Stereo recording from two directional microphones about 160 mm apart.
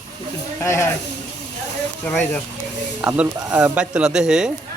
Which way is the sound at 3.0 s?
10° right (ahead or behind).